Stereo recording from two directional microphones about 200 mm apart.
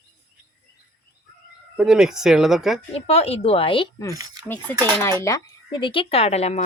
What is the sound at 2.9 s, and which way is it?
Speech, 30° left (ahead or behind).